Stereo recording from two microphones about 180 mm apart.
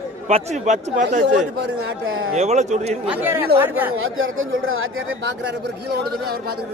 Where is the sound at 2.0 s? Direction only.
90° right.